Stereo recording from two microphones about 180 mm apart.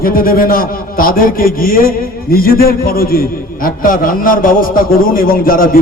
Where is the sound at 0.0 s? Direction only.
55° left (ahead or behind).